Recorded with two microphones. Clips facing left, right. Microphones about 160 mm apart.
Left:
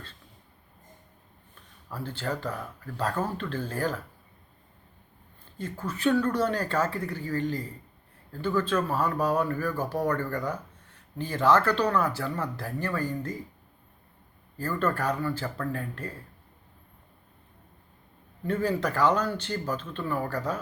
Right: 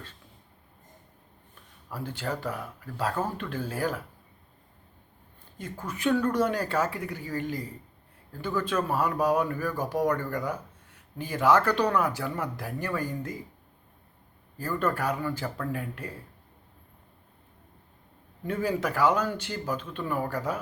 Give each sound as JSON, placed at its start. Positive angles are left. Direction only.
{"t": 1.9, "sound": "speech", "side_deg": -10}
{"t": 5.5, "sound": "speech", "side_deg": -15}
{"t": 14.6, "sound": "speech", "side_deg": -10}
{"t": 18.4, "sound": "speech", "side_deg": -10}